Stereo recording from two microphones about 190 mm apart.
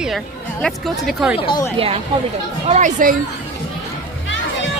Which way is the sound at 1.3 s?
30° left (ahead or behind).